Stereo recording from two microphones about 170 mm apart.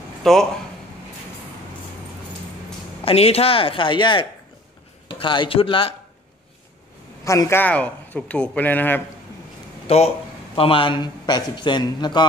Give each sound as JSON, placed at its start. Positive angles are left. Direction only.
{"t": 0.2, "sound": "speech", "side_deg": 0}
{"t": 3.0, "sound": "speech", "side_deg": 35}
{"t": 7.2, "sound": "speech", "side_deg": 15}
{"t": 9.8, "sound": "speech", "side_deg": 35}